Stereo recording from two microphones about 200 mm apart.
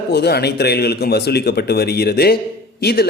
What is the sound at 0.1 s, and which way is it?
A man's voice, 55° left (ahead or behind).